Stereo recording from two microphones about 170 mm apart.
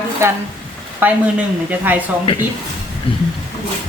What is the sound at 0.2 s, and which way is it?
Speech, 15° right (ahead or behind).